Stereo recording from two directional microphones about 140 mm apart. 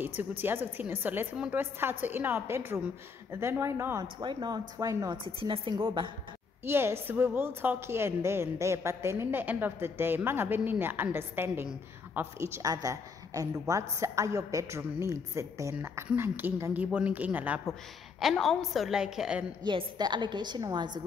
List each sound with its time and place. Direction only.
0.0 s a woman's voice: 15° right (ahead or behind)
4.2 s a woman's voice: 35° right (ahead or behind)
5.1 s a woman's voice: 40° right (ahead or behind)
6.6 s a woman's voice: 15° right (ahead or behind)
18.2 s a woman's voice: centre (ahead or behind)
19.6 s a woman's voice: 30° right (ahead or behind)